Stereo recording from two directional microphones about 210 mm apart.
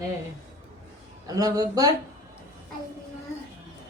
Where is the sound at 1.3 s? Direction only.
15° right (ahead or behind).